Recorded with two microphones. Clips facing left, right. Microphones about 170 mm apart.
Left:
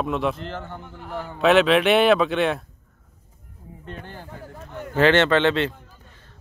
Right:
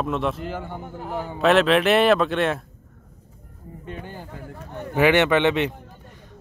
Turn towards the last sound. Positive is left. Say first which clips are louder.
# even
turn(degrees=-15)  # may be behind; listen again after turning